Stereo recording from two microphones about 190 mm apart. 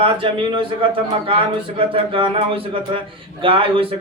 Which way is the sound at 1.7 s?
25° right (ahead or behind).